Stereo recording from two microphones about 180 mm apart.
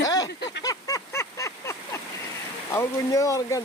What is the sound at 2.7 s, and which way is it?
Speech, 15° left (ahead or behind).